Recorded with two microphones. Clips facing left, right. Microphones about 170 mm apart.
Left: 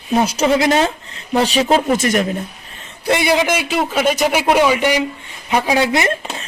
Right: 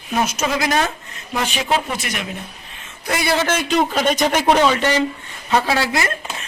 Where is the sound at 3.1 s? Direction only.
20° left (ahead or behind).